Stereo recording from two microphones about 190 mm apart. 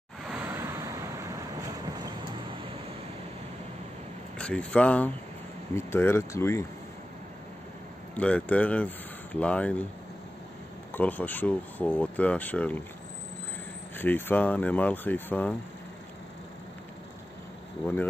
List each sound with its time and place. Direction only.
0.5 s vehicle: 15° right (ahead or behind)
4.4 s speech: 5° left (ahead or behind)
8.2 s speech: 5° left (ahead or behind)
10.9 s speech: 10° left (ahead or behind)
13.9 s speech: 10° left (ahead or behind)